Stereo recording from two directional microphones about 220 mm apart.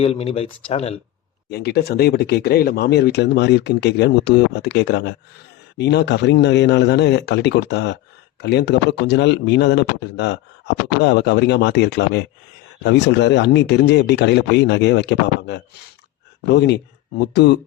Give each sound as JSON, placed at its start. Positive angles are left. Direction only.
{"t": 0.0, "sound": "speech", "side_deg": 25}
{"t": 1.5, "sound": "speech", "side_deg": 45}